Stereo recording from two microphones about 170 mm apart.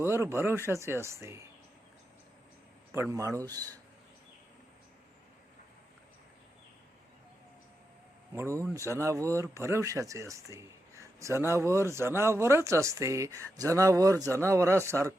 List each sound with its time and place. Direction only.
0.0 s speech: 15° right (ahead or behind)
2.9 s speech: 15° right (ahead or behind)
8.4 s speech: 15° right (ahead or behind)